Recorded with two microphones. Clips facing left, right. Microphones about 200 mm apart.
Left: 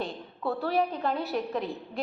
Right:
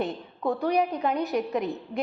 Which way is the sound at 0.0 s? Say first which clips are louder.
Right 4 dB; 15° right (ahead or behind).